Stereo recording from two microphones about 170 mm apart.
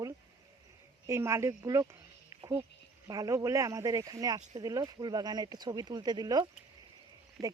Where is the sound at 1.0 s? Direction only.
15° right (ahead or behind).